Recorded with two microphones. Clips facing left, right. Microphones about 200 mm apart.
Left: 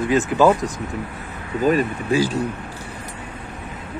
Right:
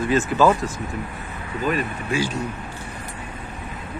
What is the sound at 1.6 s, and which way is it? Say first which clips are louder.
Speech: left 6 dB; 40° left (ahead or behind).